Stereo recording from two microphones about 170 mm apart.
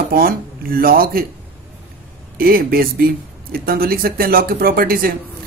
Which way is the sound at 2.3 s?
60° right (ahead or behind).